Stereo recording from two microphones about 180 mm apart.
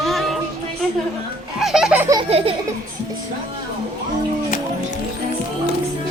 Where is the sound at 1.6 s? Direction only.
5° right (ahead or behind).